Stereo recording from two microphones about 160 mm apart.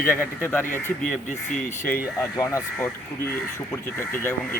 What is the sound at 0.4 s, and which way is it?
Speech, 15° left (ahead or behind).